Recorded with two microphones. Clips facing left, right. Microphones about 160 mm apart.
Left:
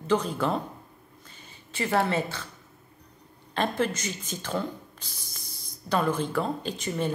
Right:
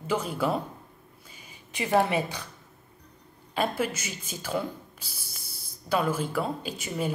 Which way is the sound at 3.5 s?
10° right (ahead or behind).